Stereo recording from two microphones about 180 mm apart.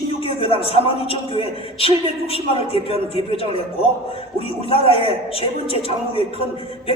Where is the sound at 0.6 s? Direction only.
30° left (ahead or behind).